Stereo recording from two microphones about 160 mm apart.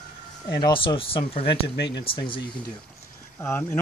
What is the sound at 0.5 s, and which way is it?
Speech, 30° left (ahead or behind).